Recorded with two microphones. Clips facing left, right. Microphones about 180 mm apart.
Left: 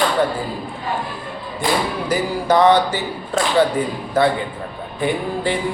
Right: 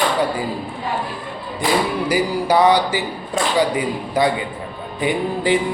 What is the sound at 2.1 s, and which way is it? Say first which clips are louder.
Speech: left 1 dB; 10° right (ahead or behind).